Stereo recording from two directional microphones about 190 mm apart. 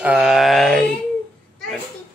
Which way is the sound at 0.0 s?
5° right (ahead or behind).